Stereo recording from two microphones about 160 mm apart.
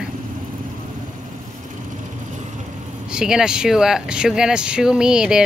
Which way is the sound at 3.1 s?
5° right (ahead or behind).